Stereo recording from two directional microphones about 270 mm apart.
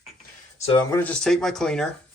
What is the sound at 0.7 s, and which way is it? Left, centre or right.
Speech, centre.